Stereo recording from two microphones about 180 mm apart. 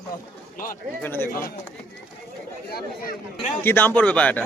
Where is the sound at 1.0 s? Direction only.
10° left (ahead or behind).